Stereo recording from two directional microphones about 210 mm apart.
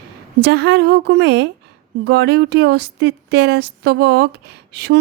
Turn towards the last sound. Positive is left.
turn(degrees=-50)  # may be behind; listen again after turning